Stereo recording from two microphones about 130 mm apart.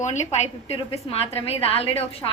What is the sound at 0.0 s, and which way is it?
A woman's voice, 65° left (ahead or behind).